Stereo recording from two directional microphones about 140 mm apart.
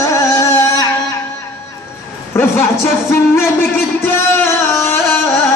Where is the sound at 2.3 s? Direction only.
20° left (ahead or behind).